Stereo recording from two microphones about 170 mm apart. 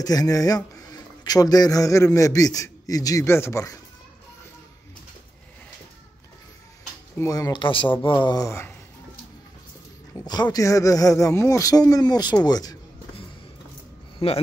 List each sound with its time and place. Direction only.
0.0 s a man's voice: 20° left (ahead or behind)
7.2 s speech: 20° left (ahead or behind)
10.2 s speech: 25° left (ahead or behind)
12.4 s a sound: 25° left (ahead or behind)
14.2 s speech: 35° left (ahead or behind)